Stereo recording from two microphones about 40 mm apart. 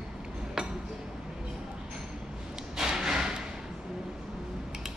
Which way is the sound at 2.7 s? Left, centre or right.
Centre.